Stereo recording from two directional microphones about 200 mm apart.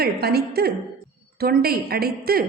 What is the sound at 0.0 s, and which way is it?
A woman's voice, 50° right (ahead or behind).